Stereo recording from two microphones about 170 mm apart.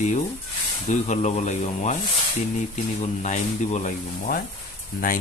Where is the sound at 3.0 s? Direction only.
45° left (ahead or behind).